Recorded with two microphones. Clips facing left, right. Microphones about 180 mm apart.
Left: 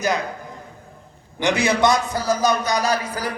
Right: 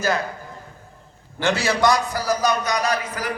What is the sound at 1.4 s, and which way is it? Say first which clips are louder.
A man's voice: left 2 dB; 15° left (ahead or behind).